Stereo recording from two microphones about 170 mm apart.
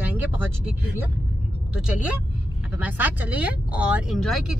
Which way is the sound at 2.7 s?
10° right (ahead or behind).